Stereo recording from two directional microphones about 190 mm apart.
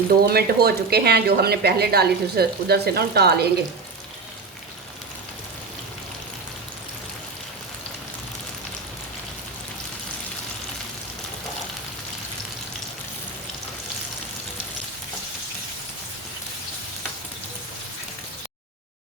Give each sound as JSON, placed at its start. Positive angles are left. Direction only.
{"t": 0.3, "sound": "speech", "side_deg": -55}